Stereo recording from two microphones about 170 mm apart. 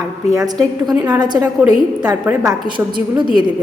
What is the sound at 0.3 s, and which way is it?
A woman's voice, 20° right (ahead or behind).